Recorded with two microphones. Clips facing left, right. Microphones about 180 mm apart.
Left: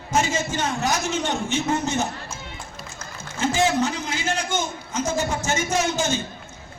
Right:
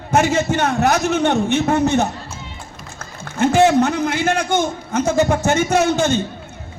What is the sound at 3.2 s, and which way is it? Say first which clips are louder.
A man's voice: right 8 dB; 60° right (ahead or behind).